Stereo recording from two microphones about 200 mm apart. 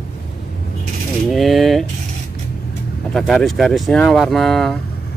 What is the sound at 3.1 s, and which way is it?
Speech, centre (ahead or behind).